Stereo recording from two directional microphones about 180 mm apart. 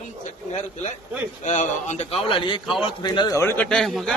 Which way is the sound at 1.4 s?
40° left (ahead or behind).